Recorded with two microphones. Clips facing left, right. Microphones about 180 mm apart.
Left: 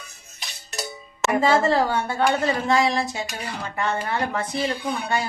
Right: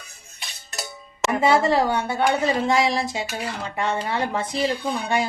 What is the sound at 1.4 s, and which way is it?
A woman's voice, 20° right (ahead or behind).